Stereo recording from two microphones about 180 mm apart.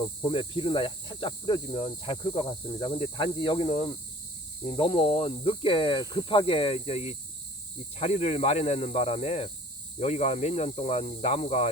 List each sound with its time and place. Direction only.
0.0 s cricket: 25° left (ahead or behind)
7.9 s speech: 35° left (ahead or behind)